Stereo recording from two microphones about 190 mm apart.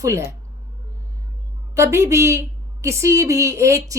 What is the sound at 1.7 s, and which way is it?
A woman's voice, 15° right (ahead or behind).